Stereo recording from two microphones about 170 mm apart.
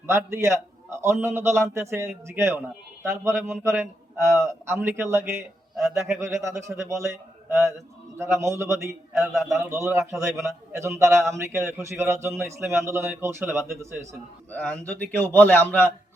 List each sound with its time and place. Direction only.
0.1 s a man's voice: 15° right (ahead or behind)
9.1 s a man's voice: centre (ahead or behind)
9.6 s a man's voice: 15° right (ahead or behind)
14.5 s a man's voice: 10° left (ahead or behind)